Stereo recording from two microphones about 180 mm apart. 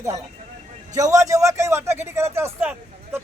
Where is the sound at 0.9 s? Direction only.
20° right (ahead or behind).